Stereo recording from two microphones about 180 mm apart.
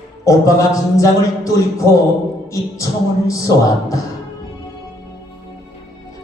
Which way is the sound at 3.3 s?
20° left (ahead or behind).